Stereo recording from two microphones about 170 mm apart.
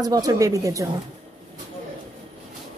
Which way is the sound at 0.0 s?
20° right (ahead or behind).